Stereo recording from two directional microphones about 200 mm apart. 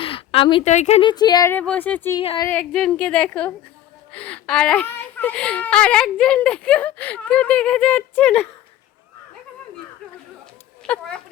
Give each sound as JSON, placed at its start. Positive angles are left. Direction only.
{"t": 0.0, "sound": "a sound", "side_deg": 25}
{"t": 0.7, "sound": "speech", "side_deg": 35}
{"t": 2.1, "sound": "speech", "side_deg": 25}
{"t": 2.5, "sound": "a woman's voice", "side_deg": 5}
{"t": 10.8, "sound": "a woman's voice", "side_deg": 5}